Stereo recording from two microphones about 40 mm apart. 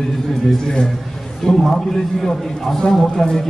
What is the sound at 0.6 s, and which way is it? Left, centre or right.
Speech, centre.